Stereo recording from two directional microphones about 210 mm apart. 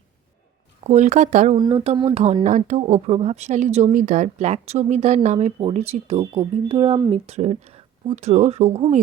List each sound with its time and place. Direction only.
0.9 s speech: 35° right (ahead or behind)
1.5 s speech: 25° right (ahead or behind)